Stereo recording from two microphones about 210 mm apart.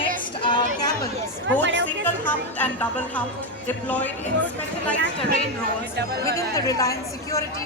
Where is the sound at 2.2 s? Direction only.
5° left (ahead or behind).